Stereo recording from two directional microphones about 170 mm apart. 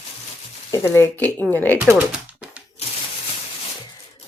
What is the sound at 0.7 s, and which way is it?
Speech, 15° left (ahead or behind).